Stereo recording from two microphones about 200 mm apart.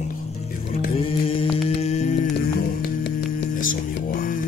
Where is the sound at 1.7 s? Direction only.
30° left (ahead or behind).